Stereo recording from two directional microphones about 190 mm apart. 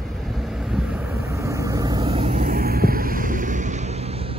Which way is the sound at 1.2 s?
15° right (ahead or behind).